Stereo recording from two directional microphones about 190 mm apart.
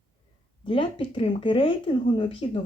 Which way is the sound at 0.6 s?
25° left (ahead or behind).